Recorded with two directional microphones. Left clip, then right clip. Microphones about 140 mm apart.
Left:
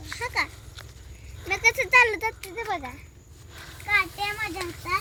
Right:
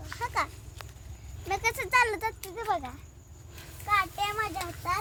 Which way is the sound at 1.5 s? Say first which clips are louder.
Left 7 dB; 30° right (ahead or behind).